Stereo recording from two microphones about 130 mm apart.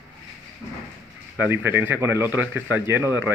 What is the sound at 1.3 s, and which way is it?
Speech, 15° right (ahead or behind).